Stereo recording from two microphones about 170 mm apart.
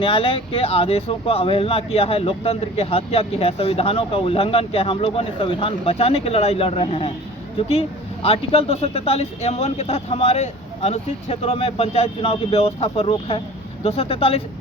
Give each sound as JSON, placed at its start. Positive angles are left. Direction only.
{"t": 0.0, "sound": "speech", "side_deg": 30}